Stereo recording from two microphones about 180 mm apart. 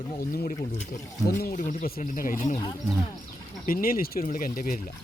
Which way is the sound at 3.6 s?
55° left (ahead or behind).